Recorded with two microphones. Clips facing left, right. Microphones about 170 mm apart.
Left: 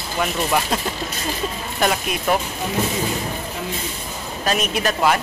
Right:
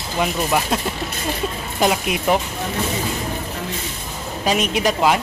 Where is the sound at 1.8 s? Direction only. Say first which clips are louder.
Right 2 dB; 15° right (ahead or behind).